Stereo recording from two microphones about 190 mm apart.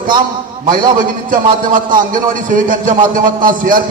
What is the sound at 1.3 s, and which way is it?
A man's voice, 45° right (ahead or behind).